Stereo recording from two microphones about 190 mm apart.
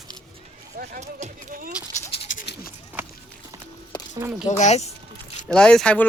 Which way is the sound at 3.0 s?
10° right (ahead or behind).